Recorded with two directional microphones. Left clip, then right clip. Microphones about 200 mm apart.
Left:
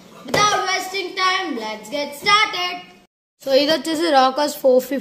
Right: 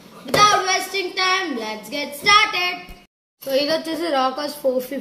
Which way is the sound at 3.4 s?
40° left (ahead or behind).